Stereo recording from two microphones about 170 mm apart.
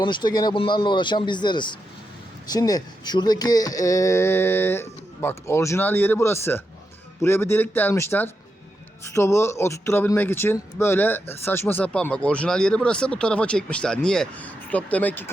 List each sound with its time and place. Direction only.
0.0 s speech: 25° left (ahead or behind); by 15.3 s 10° left (ahead or behind)